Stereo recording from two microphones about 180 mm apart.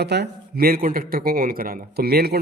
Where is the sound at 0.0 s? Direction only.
65° right (ahead or behind).